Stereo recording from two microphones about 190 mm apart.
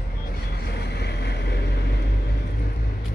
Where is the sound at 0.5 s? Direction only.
60° left (ahead or behind).